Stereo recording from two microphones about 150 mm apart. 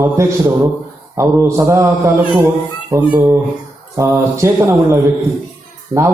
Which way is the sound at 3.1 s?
10° right (ahead or behind).